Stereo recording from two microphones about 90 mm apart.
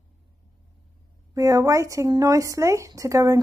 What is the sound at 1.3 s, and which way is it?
Speech, 35° right (ahead or behind).